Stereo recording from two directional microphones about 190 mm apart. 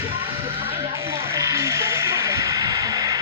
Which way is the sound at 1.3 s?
15° right (ahead or behind).